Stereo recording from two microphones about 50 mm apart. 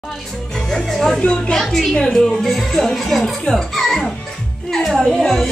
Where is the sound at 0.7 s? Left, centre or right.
Centre.